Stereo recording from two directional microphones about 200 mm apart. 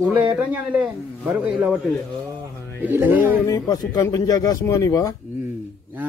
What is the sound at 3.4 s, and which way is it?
Speech, 15° left (ahead or behind).